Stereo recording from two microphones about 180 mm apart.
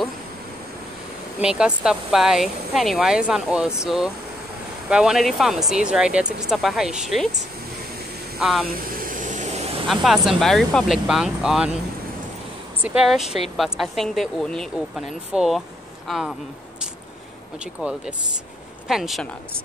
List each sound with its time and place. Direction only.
1.4 s speech: 5° right (ahead or behind)
8.6 s vehicle: 50° right (ahead or behind); by 9.8 s 35° right (ahead or behind)
9.8 s speech: centre (ahead or behind)
12.8 s speech: 5° right (ahead or behind)
18.9 s speech: centre (ahead or behind)